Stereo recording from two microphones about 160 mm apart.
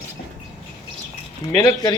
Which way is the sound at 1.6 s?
25° left (ahead or behind).